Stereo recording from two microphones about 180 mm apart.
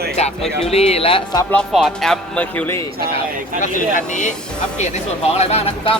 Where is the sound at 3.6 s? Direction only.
45° left (ahead or behind).